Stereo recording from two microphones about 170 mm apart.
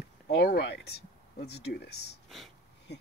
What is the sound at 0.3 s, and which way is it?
Speech, 75° left (ahead or behind).